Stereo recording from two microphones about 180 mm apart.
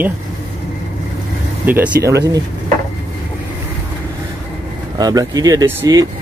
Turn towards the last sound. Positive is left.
turn(degrees=-15)  # may be behind; listen again after turning